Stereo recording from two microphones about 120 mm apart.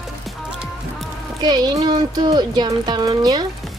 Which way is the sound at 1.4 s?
35° right (ahead or behind).